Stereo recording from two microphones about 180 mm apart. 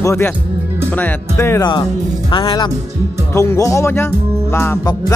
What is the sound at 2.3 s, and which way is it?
Speech, 25° left (ahead or behind).